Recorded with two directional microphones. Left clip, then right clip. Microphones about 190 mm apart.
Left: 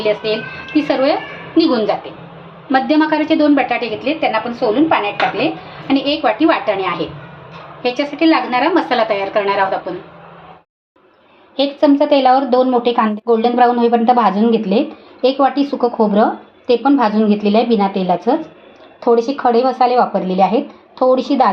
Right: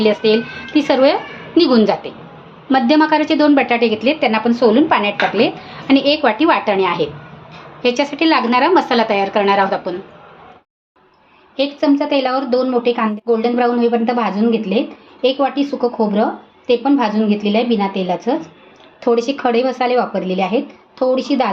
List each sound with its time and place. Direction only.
0.0 s a woman's voice: 35° right (ahead or behind)
11.5 s speech: 5° left (ahead or behind)
19.0 s speech: 10° right (ahead or behind)